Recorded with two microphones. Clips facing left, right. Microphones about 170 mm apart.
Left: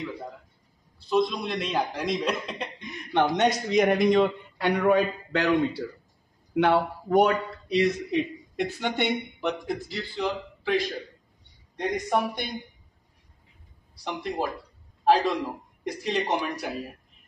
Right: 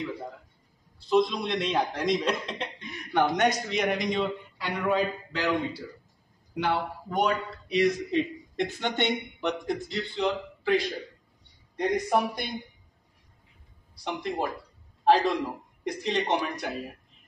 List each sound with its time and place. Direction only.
0.9 s speech: centre (ahead or behind)
2.8 s a man's voice: 20° left (ahead or behind)
3.9 s a man's voice: 65° left (ahead or behind)
6.5 s a man's voice: 60° left (ahead or behind)
7.6 s speech: 35° left (ahead or behind)
8.1 s speech: 15° left (ahead or behind)
14.0 s speech: centre (ahead or behind)